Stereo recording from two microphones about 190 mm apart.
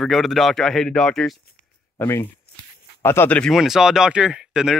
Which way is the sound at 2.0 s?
15° left (ahead or behind).